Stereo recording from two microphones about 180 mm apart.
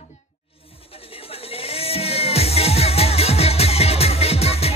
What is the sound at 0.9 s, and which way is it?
Music, 30° left (ahead or behind).